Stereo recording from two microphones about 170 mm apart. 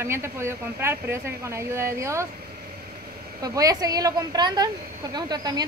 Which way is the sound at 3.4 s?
20° right (ahead or behind).